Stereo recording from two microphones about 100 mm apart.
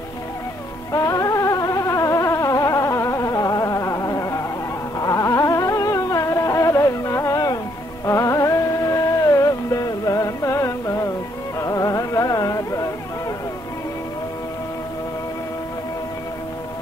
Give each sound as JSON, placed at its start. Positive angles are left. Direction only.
{"t": 0.9, "sound": "music", "side_deg": 35}